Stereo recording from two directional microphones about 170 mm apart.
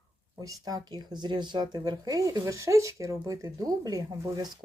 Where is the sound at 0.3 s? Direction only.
20° right (ahead or behind).